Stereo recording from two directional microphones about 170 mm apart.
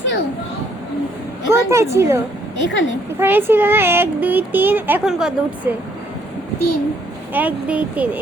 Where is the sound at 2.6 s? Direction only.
90° left.